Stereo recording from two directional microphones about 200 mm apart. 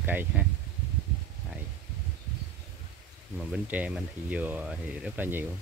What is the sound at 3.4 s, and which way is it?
Speech, 5° right (ahead or behind).